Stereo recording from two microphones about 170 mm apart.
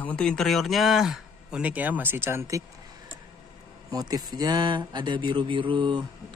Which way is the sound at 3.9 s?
25° right (ahead or behind).